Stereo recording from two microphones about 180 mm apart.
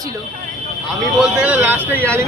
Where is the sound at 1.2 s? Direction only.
5° right (ahead or behind).